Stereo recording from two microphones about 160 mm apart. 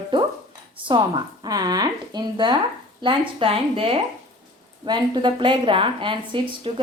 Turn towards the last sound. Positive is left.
turn(degrees=-35)  # may be behind; listen again after turning